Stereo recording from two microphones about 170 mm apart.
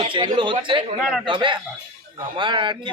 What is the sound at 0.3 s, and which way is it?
Speech, 30° right (ahead or behind).